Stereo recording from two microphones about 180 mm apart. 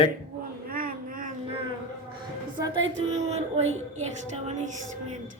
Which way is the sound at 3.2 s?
40° right (ahead or behind).